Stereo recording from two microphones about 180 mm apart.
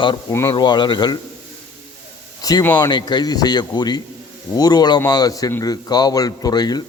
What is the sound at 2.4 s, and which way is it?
Speech, 20° left (ahead or behind).